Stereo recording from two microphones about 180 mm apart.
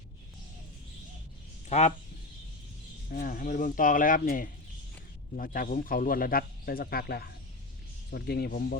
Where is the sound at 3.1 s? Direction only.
50° left (ahead or behind).